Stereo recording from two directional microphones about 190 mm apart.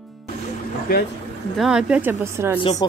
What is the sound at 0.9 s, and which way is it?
Speech, 50° left (ahead or behind).